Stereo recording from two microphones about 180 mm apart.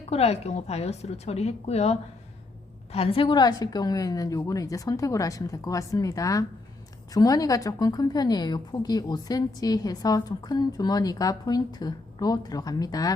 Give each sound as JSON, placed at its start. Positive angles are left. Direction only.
{"t": 0.0, "sound": "a woman's voice", "side_deg": 35}